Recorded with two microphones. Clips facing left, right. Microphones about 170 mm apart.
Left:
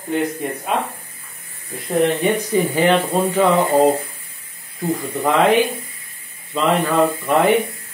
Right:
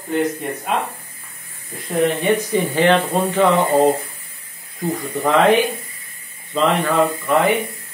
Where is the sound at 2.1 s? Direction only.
Centre (ahead or behind).